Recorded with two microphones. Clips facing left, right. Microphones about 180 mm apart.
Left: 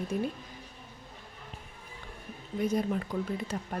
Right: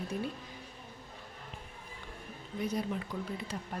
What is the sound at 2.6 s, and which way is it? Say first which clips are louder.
Speech: left 5 dB; 50° left (ahead or behind).